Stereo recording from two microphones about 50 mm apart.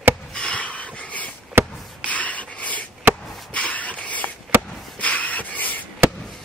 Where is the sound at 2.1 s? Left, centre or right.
Left.